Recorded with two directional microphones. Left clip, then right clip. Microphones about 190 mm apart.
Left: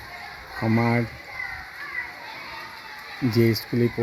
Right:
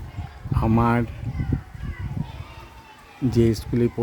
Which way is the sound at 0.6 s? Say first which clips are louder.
Right 2 dB; 10° right (ahead or behind).